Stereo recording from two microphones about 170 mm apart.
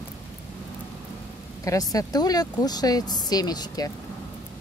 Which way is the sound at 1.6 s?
20° left (ahead or behind).